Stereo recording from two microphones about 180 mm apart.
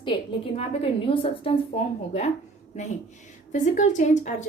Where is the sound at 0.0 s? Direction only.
30° left (ahead or behind).